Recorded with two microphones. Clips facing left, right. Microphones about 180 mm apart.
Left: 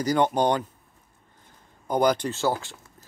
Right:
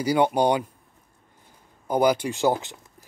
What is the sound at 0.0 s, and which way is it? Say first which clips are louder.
Speech: right 1 dB; 10° right (ahead or behind).